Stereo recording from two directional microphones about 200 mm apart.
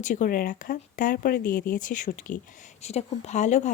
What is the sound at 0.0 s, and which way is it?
Speech, 40° left (ahead or behind).